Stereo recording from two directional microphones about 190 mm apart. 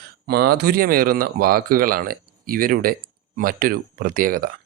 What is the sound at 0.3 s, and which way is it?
Speech, 55° right (ahead or behind).